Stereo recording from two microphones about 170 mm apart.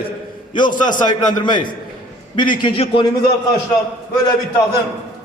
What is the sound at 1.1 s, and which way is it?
Speech, 25° left (ahead or behind).